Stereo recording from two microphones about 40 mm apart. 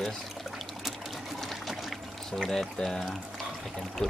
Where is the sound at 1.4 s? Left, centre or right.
Centre.